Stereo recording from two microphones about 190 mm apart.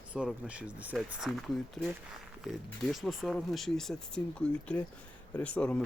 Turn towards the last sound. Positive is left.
turn(degrees=5)  # may be behind; listen again after turning